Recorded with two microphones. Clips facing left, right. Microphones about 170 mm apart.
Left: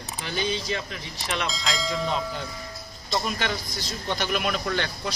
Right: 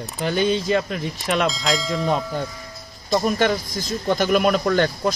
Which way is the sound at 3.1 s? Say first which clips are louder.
Right 9 dB; 45° right (ahead or behind).